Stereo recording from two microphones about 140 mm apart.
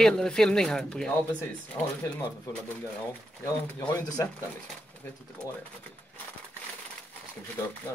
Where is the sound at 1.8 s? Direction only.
20° left (ahead or behind).